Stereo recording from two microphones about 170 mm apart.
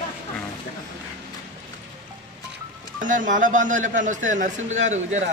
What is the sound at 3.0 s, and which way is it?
Speech, 50° right (ahead or behind).